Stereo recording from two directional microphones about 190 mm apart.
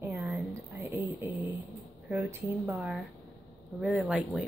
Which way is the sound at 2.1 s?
10° right (ahead or behind).